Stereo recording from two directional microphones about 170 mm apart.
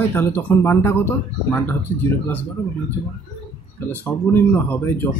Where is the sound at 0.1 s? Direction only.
10° left (ahead or behind).